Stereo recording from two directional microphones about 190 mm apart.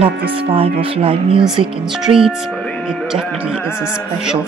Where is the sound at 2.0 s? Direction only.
5° right (ahead or behind).